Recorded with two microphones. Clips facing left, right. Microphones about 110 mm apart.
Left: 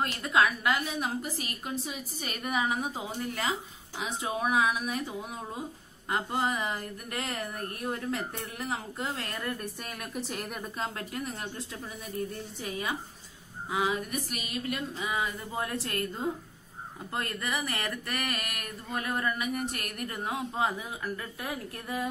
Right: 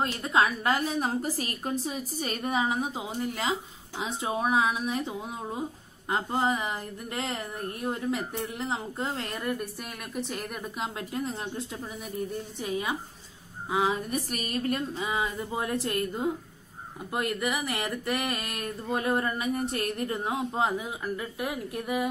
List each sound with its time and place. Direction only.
0.0 s a woman's voice: 25° right (ahead or behind)
9.4 s a woman's voice: 10° right (ahead or behind)
10.8 s a woman's voice: 20° right (ahead or behind); by 14.8 s 45° right (ahead or behind)
15.0 s speech: 25° right (ahead or behind)